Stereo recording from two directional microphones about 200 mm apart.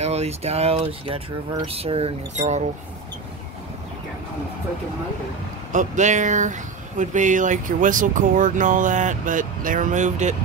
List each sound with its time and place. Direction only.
0.0 s speech: 30° right (ahead or behind)
5.7 s speech: 35° right (ahead or behind)